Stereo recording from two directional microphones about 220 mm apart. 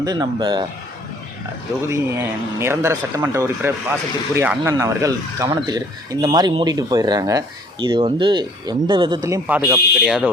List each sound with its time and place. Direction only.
0.0 s speech: 20° right (ahead or behind)
1.9 s speech: 10° right (ahead or behind)